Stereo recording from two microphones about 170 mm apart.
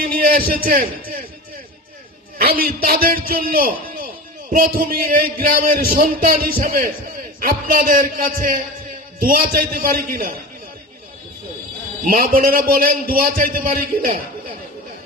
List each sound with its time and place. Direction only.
0.0 s a man's voice: 60° right (ahead or behind)
2.4 s a man's voice: 60° right (ahead or behind)
12.0 s a man's voice: 55° right (ahead or behind)